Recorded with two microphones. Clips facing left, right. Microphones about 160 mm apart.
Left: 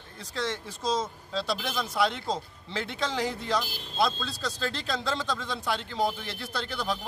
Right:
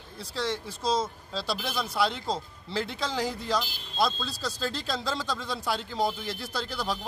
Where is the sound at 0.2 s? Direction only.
5° right (ahead or behind).